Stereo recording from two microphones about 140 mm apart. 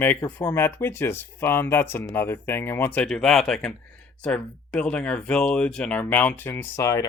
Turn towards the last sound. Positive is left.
turn(degrees=20)  # may be behind; listen again after turning